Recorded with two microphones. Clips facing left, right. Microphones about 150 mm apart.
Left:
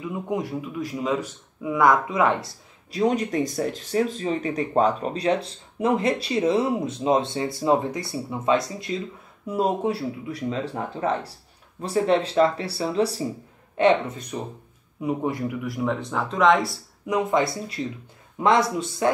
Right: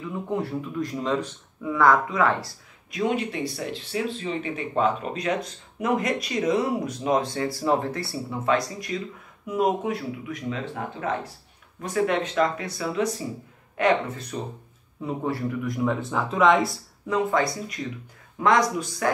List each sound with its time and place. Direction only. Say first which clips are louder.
0.0 s speech: left 1 dB; 15° left (ahead or behind)
2.9 s speech: left 3 dB; 35° left (ahead or behind); by 15.5 s 15° left (ahead or behind)
15.6 s speech: right 2 dB; centre (ahead or behind)
17.0 s speech: left 1 dB; 15° left (ahead or behind)